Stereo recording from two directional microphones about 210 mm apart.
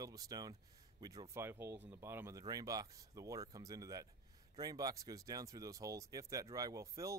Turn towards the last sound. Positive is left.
turn(degrees=-15)  # may be behind; listen again after turning